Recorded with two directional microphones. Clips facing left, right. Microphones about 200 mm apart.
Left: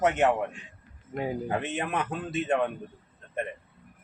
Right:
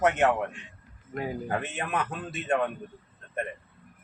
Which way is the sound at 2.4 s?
20° left (ahead or behind).